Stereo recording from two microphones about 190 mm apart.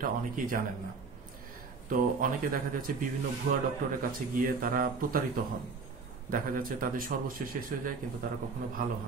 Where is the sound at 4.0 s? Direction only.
50° right (ahead or behind).